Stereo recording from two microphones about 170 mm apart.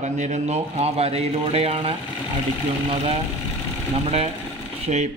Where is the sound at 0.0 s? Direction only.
45° right (ahead or behind).